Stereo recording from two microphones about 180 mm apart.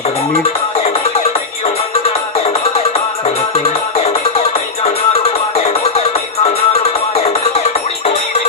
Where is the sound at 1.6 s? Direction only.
35° left (ahead or behind).